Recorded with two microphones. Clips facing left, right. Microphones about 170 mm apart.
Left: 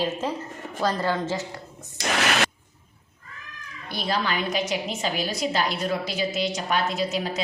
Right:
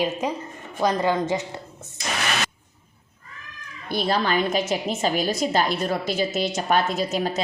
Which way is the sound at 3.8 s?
50° right (ahead or behind).